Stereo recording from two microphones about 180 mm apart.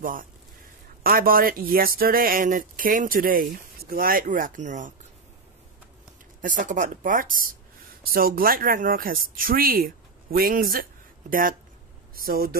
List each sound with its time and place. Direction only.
0.0 s speech: 50° right (ahead or behind)
6.4 s a man's voice: 45° right (ahead or behind)